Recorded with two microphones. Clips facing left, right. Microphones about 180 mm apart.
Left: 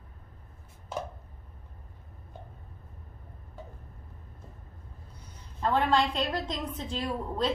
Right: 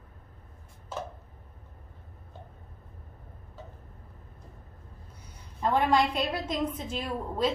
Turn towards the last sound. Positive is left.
turn(degrees=-10)  # may be behind; listen again after turning